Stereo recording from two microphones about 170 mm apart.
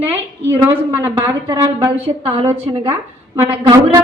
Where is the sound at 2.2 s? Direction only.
35° right (ahead or behind).